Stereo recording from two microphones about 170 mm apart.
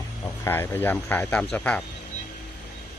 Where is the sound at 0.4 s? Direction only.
15° left (ahead or behind).